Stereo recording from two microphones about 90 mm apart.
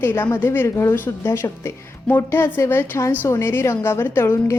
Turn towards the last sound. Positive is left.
turn(degrees=25)  # may be behind; listen again after turning